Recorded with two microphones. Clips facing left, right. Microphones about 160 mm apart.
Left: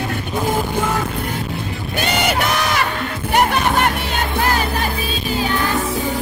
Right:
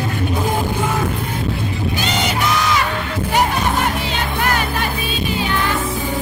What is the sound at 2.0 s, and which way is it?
Crowd, 55° left (ahead or behind).